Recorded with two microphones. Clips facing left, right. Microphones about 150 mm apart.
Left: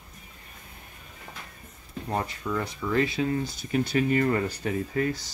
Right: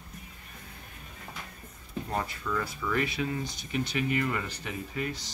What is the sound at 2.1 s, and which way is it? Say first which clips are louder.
Speech: left 3 dB; 25° left (ahead or behind).